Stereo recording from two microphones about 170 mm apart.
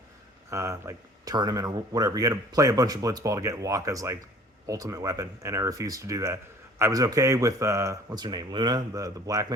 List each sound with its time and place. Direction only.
0.5 s speech: 15° right (ahead or behind)